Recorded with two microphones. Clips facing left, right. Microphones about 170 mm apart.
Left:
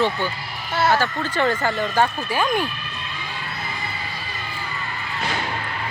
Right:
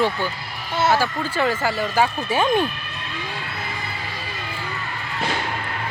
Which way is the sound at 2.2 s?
25° right (ahead or behind).